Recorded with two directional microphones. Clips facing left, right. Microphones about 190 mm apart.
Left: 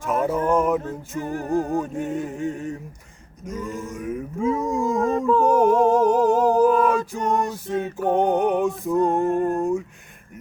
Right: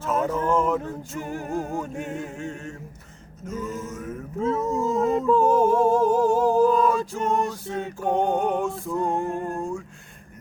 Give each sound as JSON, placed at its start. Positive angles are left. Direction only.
{"t": 0.0, "sound": "mantra", "side_deg": 15}
{"t": 1.2, "sound": "music", "side_deg": -15}
{"t": 1.5, "sound": "music", "side_deg": 15}
{"t": 3.4, "sound": "a sound", "side_deg": 15}
{"t": 5.4, "sound": "music", "side_deg": 15}